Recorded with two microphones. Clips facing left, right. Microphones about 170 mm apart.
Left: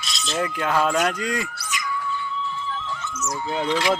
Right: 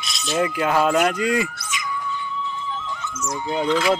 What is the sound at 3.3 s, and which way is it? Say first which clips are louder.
Speech: right 2 dB; 15° right (ahead or behind).